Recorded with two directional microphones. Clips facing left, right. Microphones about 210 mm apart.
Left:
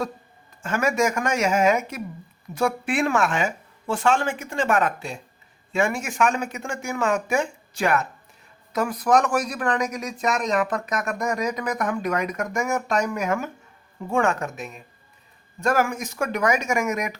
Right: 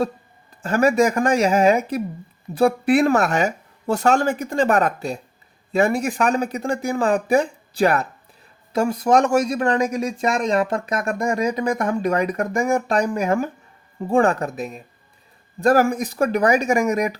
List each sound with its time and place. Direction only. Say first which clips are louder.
0.6 s a man's voice: right 5 dB; 35° right (ahead or behind)